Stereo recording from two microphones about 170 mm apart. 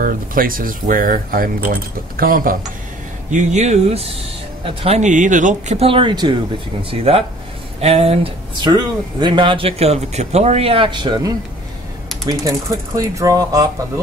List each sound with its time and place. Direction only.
0.0 s speech: 55° right (ahead or behind)
3.3 s speech: 45° right (ahead or behind); by 14.0 s 20° right (ahead or behind)